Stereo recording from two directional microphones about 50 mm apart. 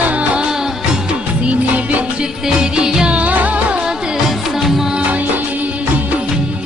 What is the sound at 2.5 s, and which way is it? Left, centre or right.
Music, centre.